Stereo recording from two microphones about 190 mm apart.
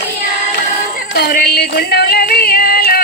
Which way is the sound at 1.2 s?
55° left (ahead or behind).